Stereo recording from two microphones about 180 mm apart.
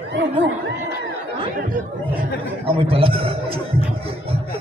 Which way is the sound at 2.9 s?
30° right (ahead or behind).